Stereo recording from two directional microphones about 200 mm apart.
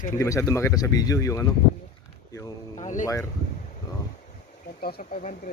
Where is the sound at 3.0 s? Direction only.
15° left (ahead or behind).